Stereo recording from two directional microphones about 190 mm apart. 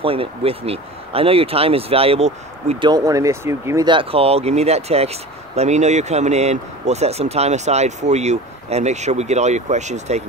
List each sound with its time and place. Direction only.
0.0 s speech: 30° right (ahead or behind)
2.9 s speech: 15° right (ahead or behind); by 10.2 s 35° right (ahead or behind)